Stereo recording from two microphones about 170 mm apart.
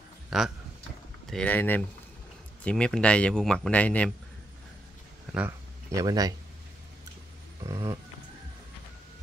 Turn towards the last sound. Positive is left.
turn(degrees=-20)  # may be behind; listen again after turning